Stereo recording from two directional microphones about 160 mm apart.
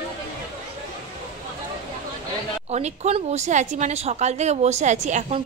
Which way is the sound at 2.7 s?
45° right (ahead or behind).